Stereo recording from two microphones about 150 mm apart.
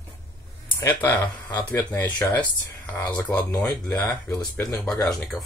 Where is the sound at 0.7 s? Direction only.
15° left (ahead or behind).